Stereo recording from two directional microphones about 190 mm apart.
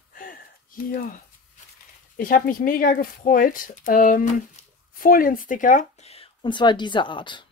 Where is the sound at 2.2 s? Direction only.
50° left (ahead or behind).